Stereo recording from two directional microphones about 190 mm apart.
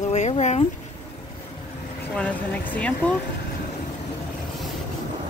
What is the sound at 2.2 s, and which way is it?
Speech, 10° left (ahead or behind).